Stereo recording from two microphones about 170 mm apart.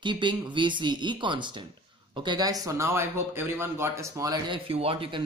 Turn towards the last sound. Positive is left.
turn(degrees=-30)  # may be behind; listen again after turning